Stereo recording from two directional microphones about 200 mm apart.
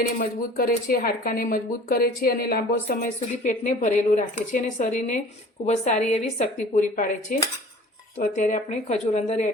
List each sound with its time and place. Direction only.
0.2 s speech: 45° left (ahead or behind)